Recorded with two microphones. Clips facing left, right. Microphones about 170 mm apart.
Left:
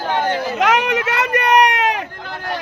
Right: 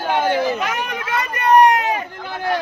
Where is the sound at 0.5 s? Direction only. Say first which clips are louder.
Left 7 dB; 85° left.